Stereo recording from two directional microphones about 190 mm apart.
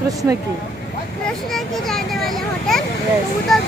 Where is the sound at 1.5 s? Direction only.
Centre (ahead or behind).